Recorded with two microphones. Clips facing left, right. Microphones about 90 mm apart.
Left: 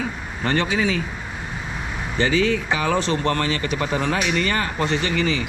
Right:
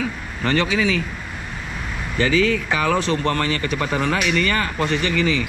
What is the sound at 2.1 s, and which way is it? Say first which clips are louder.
Speech: right 1 dB; 25° left (ahead or behind).